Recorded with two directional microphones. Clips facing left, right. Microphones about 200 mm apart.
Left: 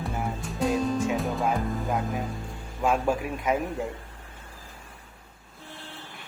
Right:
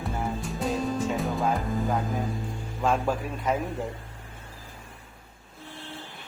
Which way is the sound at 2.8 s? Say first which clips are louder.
Left 1 dB; 10° left (ahead or behind).